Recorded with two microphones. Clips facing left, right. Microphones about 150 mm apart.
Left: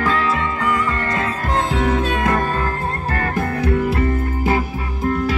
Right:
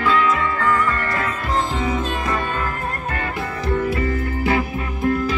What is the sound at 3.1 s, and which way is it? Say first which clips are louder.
Music: left 4 dB; 45° left (ahead or behind).